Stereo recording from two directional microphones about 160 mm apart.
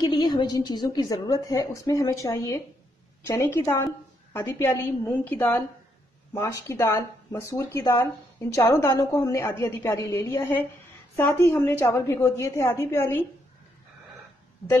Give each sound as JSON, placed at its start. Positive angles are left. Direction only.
{"t": 0.1, "sound": "a woman's voice", "side_deg": 25}